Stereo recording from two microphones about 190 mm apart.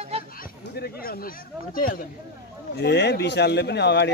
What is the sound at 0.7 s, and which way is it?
Speech, 55° left (ahead or behind).